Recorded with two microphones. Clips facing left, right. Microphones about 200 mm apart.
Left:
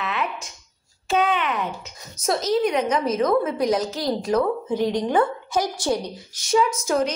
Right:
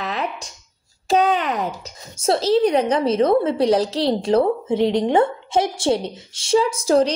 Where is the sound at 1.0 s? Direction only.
35° right (ahead or behind).